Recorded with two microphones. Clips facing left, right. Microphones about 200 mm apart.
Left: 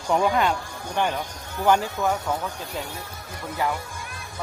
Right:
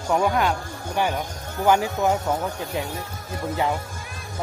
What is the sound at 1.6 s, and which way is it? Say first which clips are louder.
Speech: right 2 dB; 15° right (ahead or behind).